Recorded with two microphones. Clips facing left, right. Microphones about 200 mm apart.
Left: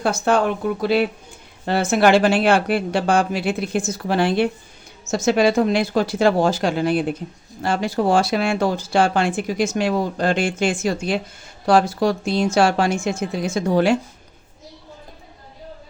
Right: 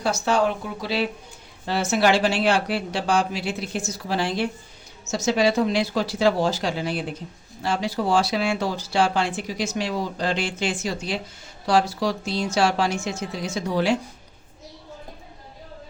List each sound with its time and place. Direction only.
0.0 s speech: 55° left (ahead or behind)